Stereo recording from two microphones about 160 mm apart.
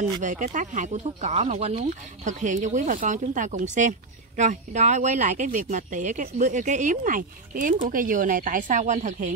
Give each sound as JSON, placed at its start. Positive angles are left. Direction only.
{"t": 0.2, "sound": "speech", "side_deg": -50}